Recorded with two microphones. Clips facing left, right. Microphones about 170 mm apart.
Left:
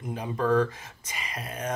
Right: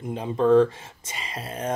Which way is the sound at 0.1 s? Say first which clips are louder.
Right 6 dB; 25° right (ahead or behind).